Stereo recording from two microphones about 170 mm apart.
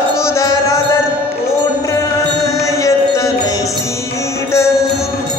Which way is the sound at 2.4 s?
20° left (ahead or behind).